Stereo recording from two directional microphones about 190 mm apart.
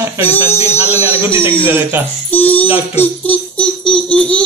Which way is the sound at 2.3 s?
10° left (ahead or behind).